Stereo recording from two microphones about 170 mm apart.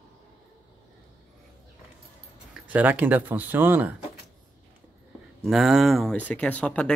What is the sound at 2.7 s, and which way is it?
Speech, 10° right (ahead or behind).